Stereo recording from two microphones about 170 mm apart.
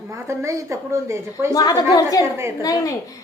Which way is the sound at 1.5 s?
20° left (ahead or behind).